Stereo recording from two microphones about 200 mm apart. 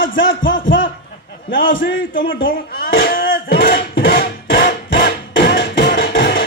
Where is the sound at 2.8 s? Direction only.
70° left (ahead or behind).